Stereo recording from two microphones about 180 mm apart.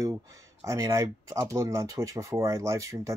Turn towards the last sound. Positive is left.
turn(degrees=-20)  # may be behind; listen again after turning